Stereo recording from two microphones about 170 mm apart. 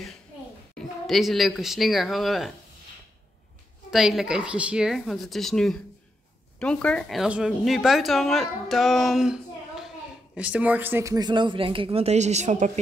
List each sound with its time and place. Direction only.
0.7 s a woman's voice: centre (ahead or behind)
3.9 s a woman's voice: centre (ahead or behind); by 12.7 s 45° right (ahead or behind)